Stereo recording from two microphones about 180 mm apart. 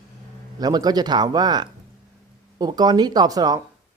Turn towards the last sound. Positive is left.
turn(degrees=-20)  # may be behind; listen again after turning